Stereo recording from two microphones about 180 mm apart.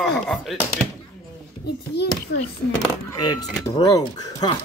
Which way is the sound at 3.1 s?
20° left (ahead or behind).